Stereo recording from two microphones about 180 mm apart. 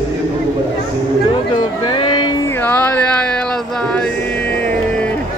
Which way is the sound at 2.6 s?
10° left (ahead or behind).